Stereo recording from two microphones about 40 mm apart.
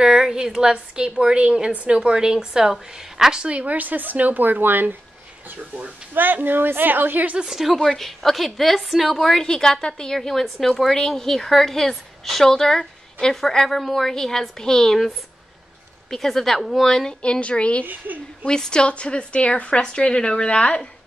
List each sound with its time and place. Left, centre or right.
0.0 s a woman's voice: centre
3.4 s a woman's voice: right
7.4 s a woman's voice: centre
7.8 s a woman's voice: centre
16.1 s a woman's voice: centre
17.2 s a woman's voice: left
17.8 s speech: right
18.4 s a woman's voice: left